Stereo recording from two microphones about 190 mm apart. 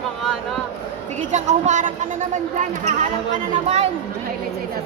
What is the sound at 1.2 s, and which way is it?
A woman's voice, 40° right (ahead or behind).